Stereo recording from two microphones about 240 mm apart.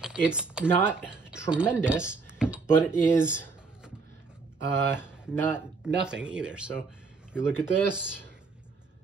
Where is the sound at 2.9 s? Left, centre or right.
Centre.